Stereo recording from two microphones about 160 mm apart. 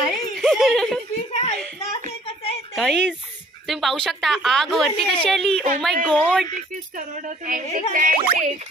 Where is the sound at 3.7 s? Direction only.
Centre (ahead or behind).